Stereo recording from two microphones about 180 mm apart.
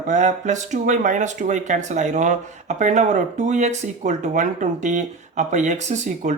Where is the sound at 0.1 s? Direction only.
40° right (ahead or behind).